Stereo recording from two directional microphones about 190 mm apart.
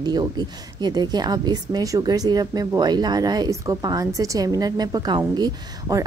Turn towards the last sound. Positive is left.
turn(degrees=-20)  # may be behind; listen again after turning